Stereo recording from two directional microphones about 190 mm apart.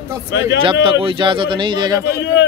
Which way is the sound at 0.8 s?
25° right (ahead or behind).